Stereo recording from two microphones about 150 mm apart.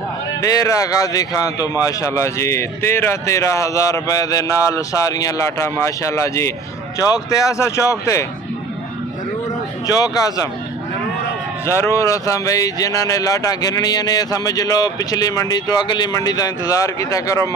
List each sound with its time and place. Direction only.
0.4 s speech: 20° left (ahead or behind)
9.8 s speech: 25° left (ahead or behind)
11.6 s speech: 20° left (ahead or behind)